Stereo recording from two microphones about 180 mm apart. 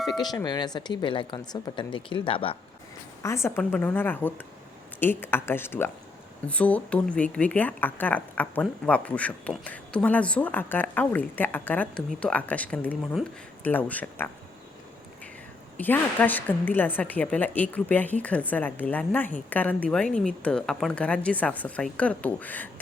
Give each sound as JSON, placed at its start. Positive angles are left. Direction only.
{"t": 0.2, "sound": "speech", "side_deg": 20}
{"t": 3.2, "sound": "a woman's voice", "side_deg": 15}
{"t": 15.8, "sound": "a woman's voice", "side_deg": 10}